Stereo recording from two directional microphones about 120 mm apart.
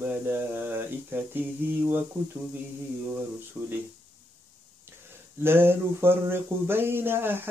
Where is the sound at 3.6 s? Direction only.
10° right (ahead or behind).